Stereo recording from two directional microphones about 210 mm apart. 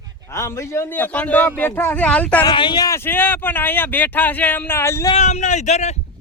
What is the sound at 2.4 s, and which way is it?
Speech, 20° left (ahead or behind).